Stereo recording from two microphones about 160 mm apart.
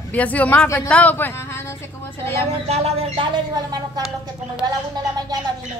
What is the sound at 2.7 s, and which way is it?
Speech, 40° right (ahead or behind).